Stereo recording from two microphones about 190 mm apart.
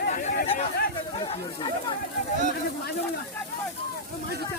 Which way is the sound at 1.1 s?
30° left (ahead or behind).